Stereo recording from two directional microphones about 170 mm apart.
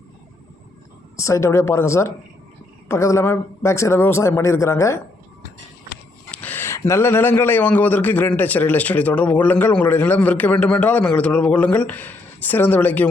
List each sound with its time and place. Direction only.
1.1 s a man's voice: 15° left (ahead or behind)
6.3 s a man's voice: 10° left (ahead or behind)